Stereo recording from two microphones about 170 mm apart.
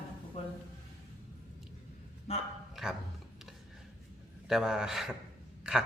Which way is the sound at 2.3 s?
35° left (ahead or behind).